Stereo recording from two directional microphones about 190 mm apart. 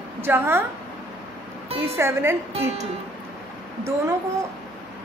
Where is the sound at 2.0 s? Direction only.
15° right (ahead or behind).